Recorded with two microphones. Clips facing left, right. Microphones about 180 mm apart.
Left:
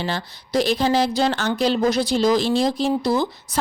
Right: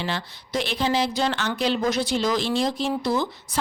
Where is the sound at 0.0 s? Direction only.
40° left (ahead or behind).